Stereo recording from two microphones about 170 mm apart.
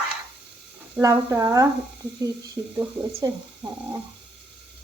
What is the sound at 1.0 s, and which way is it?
Speech, 20° right (ahead or behind).